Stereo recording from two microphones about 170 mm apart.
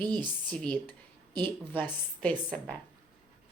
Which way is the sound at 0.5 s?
5° left (ahead or behind).